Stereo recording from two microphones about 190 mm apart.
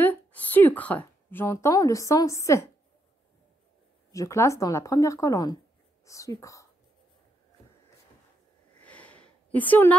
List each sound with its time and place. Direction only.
0.0 s a woman's voice: 10° left (ahead or behind)
4.1 s a woman's voice: 15° left (ahead or behind)
8.8 s sniff: 5° left (ahead or behind)